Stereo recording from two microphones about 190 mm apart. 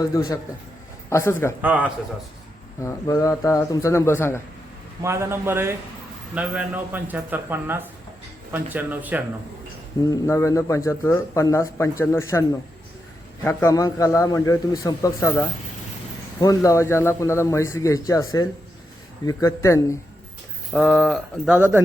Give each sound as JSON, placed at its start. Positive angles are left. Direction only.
{"t": 1.1, "sound": "a man's voice", "side_deg": 15}
{"t": 1.6, "sound": "speech", "side_deg": -10}
{"t": 2.8, "sound": "a man's voice", "side_deg": 15}
{"t": 5.0, "sound": "speech", "side_deg": -15}
{"t": 10.0, "sound": "a man's voice", "side_deg": 20}
{"t": 16.6, "sound": "a man's voice", "side_deg": 15}
{"t": 20.7, "sound": "speech", "side_deg": 0}